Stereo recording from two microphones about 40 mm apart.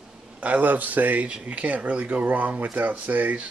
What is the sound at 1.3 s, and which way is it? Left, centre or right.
Speech, right.